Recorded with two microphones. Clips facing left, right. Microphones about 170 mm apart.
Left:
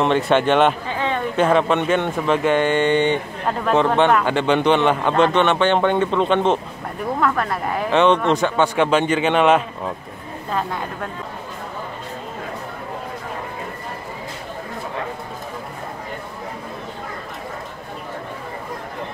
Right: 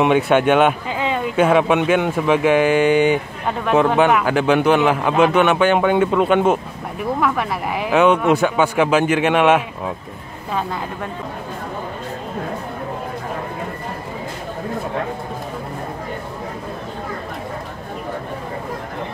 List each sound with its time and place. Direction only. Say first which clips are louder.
0.0 s speech: right 2 dB; 10° right (ahead or behind)